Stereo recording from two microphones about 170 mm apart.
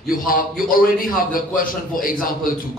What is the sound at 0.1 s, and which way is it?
A man's voice, 55° left (ahead or behind).